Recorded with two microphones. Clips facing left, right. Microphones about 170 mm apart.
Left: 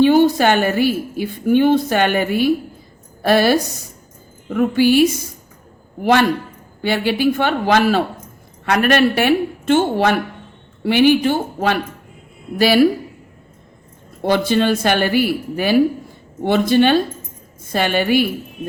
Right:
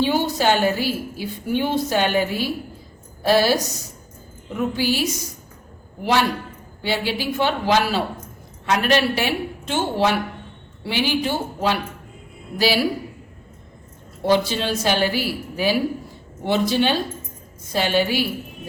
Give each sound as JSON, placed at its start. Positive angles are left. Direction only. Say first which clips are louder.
{"t": 0.0, "sound": "a woman's voice", "louder": "left 8 dB", "side_deg": 55}
{"t": 14.3, "sound": "a woman's voice", "louder": "left 4 dB", "side_deg": 55}